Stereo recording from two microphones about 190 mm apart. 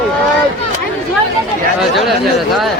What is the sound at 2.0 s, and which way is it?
Speech, centre (ahead or behind).